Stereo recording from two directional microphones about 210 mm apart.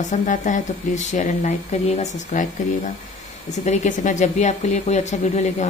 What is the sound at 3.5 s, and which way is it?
Speech, 35° left (ahead or behind).